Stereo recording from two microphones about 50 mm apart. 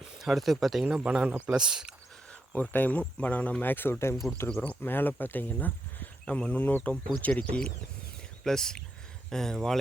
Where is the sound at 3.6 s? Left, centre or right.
Left.